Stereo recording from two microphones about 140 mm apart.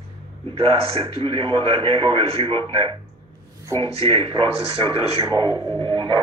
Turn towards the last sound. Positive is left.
turn(degrees=-35)  # may be behind; listen again after turning